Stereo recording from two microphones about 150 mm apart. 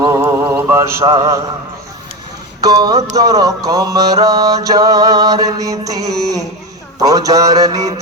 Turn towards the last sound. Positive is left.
turn(degrees=-25)  # may be behind; listen again after turning